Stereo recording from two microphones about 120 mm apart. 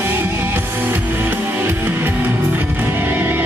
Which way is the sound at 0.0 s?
20° right (ahead or behind).